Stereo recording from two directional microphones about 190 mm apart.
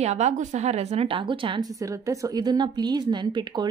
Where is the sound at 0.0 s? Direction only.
35° right (ahead or behind).